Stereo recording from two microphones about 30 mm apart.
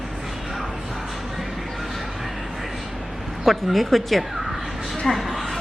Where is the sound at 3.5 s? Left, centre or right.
Centre.